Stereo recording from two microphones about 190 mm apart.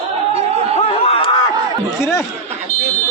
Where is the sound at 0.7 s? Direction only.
30° left (ahead or behind).